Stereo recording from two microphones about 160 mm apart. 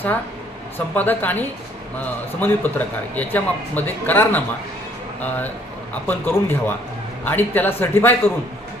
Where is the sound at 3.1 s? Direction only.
10° left (ahead or behind).